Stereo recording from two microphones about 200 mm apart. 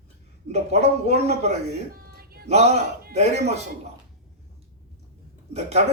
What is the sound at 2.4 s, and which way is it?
Speech, 30° right (ahead or behind).